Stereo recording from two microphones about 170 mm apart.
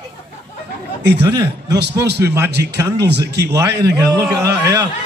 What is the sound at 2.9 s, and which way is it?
Speech, 80° right.